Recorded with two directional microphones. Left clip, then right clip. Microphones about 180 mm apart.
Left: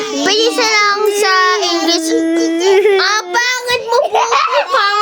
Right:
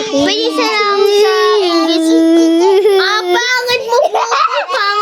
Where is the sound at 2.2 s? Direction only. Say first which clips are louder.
Right 5 dB; 35° right (ahead or behind).